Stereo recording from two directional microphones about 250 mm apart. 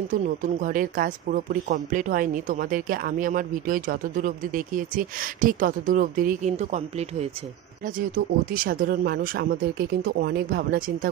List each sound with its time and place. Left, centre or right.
0.1 s speech: right
8.6 s speech: right